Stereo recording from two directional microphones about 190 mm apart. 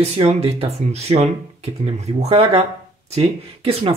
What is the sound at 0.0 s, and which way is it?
Speech, 35° right (ahead or behind).